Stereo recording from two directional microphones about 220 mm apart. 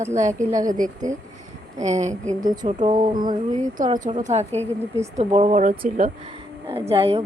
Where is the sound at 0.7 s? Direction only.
35° right (ahead or behind).